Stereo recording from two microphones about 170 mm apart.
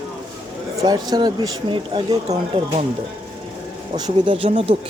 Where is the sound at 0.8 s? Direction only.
25° right (ahead or behind).